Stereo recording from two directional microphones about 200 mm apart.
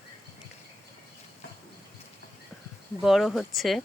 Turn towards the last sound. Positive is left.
turn(degrees=0)  # may be behind; listen again after turning